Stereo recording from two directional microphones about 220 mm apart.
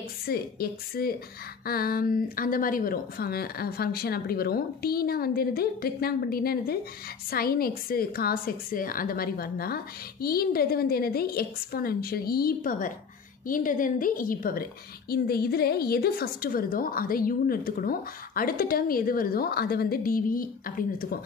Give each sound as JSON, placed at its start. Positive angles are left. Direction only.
{"t": 0.3, "sound": "a woman's voice", "side_deg": 45}